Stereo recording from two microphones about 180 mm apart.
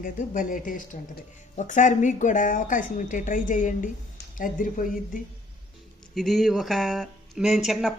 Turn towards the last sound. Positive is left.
turn(degrees=0)  # may be behind; listen again after turning